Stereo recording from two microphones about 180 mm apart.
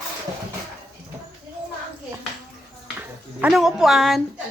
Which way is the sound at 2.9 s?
5° right (ahead or behind).